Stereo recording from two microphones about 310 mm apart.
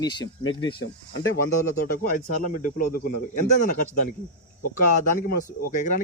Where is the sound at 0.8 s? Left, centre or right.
Left.